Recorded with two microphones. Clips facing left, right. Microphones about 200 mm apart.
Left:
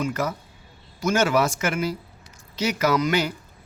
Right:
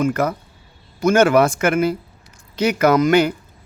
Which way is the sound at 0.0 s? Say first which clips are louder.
Right 7 dB; 55° right (ahead or behind).